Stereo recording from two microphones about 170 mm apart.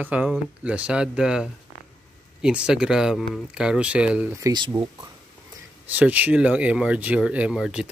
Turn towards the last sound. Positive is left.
turn(degrees=-5)  # may be behind; listen again after turning